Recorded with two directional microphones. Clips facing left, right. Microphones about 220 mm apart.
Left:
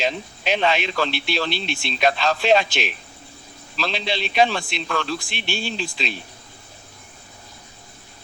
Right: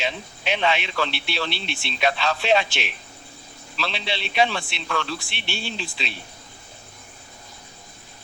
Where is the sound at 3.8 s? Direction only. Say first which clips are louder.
Left 4 dB; 40° left (ahead or behind).